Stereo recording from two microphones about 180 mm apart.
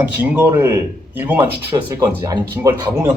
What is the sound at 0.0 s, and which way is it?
Speech, 10° right (ahead or behind).